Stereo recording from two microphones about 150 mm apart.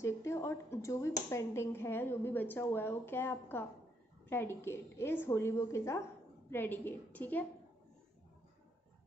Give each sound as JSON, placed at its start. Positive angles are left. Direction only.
{"t": 0.0, "sound": "speech", "side_deg": 20}